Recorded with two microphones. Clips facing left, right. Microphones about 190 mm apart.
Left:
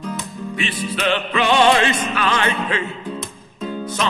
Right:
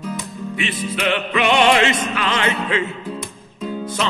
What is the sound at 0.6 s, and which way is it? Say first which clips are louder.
Music: even; 25° right (ahead or behind).